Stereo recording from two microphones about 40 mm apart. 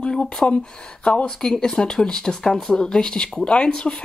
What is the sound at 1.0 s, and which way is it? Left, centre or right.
Speech, left.